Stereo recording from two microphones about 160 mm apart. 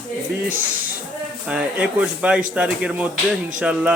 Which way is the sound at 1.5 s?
5° right (ahead or behind).